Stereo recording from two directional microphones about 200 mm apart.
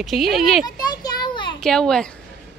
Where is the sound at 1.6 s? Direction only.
5° left (ahead or behind).